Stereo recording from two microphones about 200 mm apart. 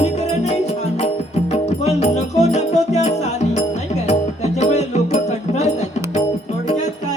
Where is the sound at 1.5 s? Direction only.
35° left (ahead or behind).